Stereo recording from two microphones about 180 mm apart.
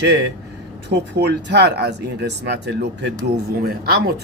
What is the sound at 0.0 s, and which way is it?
Speech, 75° right (ahead or behind).